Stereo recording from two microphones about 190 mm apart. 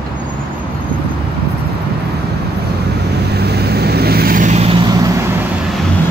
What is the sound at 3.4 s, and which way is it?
Vehicle, 60° right (ahead or behind).